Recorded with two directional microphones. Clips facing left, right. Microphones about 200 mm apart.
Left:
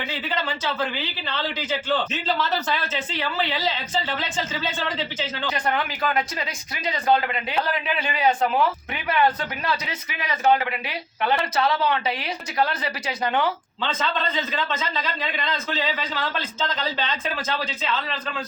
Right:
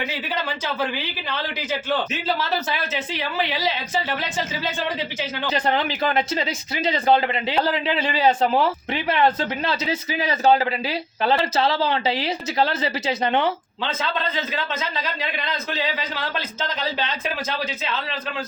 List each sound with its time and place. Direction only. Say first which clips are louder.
0.1 s speech: even; 10° right (ahead or behind)
5.5 s speech: right 4 dB; 25° right (ahead or behind)
14.5 s speech: even; 10° right (ahead or behind)